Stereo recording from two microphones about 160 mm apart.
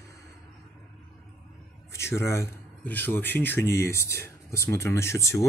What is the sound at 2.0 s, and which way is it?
Speech, 15° left (ahead or behind).